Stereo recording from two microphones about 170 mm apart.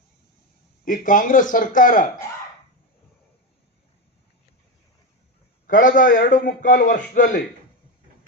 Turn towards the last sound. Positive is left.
turn(degrees=50)  # may be behind; listen again after turning